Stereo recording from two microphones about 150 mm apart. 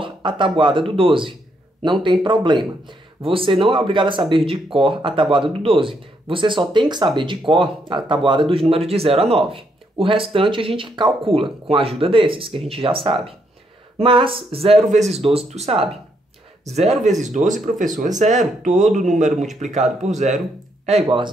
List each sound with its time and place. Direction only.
0.0 s speech: 35° right (ahead or behind); by 20.3 s 50° right (ahead or behind)